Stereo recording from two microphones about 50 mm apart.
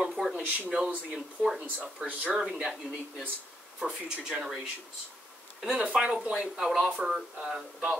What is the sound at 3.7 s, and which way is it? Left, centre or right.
Speech, centre.